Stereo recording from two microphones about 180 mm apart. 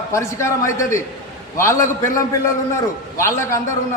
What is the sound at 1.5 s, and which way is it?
A man's voice, 15° left (ahead or behind).